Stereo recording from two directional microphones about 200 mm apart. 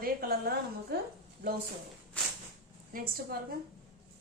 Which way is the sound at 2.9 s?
45° right (ahead or behind).